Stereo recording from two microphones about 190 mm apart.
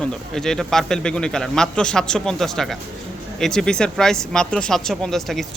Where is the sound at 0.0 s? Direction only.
5° left (ahead or behind).